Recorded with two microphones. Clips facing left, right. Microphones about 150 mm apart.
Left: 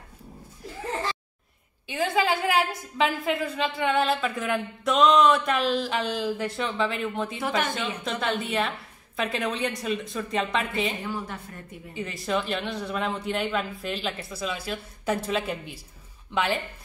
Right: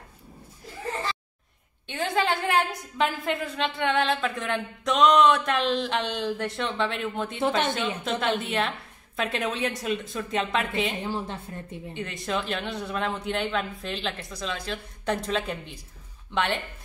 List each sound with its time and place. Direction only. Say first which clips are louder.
1.9 s a woman's voice: left 1 dB; 5° left (ahead or behind)
7.4 s a woman's voice: right 3 dB; 25° right (ahead or behind)
8.0 s a woman's voice: right 1 dB; centre (ahead or behind)
11.0 s a woman's voice: right 2 dB; 25° right (ahead or behind)
11.9 s a woman's voice: left 2 dB; centre (ahead or behind)